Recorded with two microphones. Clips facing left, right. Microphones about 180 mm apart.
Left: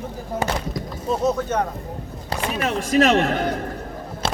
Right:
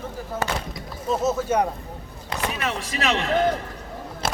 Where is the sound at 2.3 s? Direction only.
45° left (ahead or behind).